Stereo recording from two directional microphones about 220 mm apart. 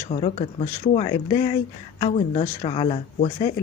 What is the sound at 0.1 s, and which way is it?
Speech, 25° left (ahead or behind).